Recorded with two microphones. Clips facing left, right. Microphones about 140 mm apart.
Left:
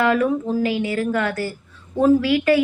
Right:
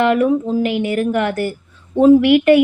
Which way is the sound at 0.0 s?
25° right (ahead or behind).